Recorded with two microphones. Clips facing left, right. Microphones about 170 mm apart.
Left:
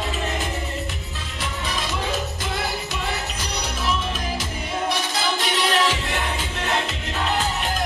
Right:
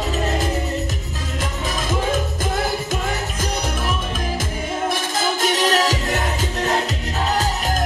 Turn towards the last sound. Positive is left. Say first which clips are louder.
# right 3 dB
turn(degrees=-40)  # may be behind; listen again after turning